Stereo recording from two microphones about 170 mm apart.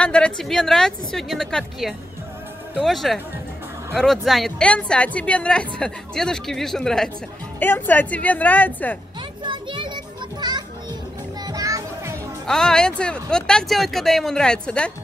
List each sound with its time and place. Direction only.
0.0 s a woman's voice: 5° left (ahead or behind)
9.4 s children playing: 30° right (ahead or behind)
11.4 s music: 20° right (ahead or behind)
12.4 s a woman's voice: 5° left (ahead or behind)